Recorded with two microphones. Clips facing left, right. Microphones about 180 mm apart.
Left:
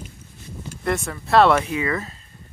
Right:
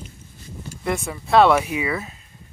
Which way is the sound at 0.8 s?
Centre (ahead or behind).